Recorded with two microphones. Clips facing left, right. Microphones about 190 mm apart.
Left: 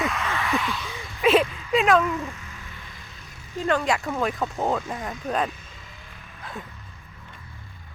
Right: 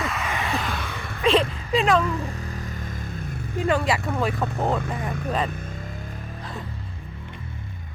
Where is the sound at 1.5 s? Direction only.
50° right (ahead or behind).